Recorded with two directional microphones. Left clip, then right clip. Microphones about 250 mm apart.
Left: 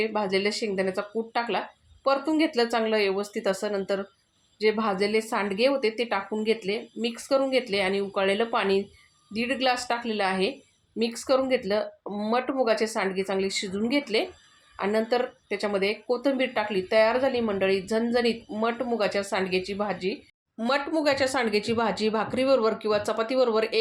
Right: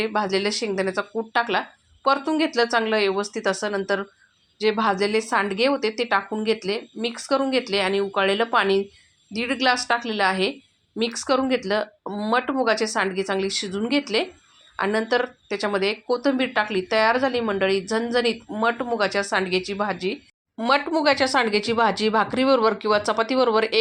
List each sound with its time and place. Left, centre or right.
0.0 s speech: centre